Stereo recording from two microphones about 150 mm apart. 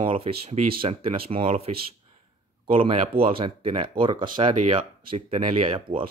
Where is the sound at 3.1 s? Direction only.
35° right (ahead or behind).